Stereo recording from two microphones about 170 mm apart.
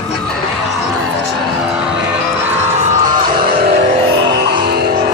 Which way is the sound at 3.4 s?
70° right (ahead or behind).